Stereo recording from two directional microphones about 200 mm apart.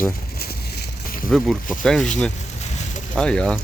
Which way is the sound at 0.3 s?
50° left (ahead or behind).